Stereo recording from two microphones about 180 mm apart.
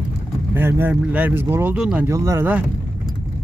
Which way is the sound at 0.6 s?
10° right (ahead or behind).